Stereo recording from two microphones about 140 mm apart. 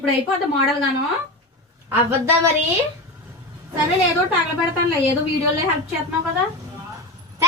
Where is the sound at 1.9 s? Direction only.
20° right (ahead or behind).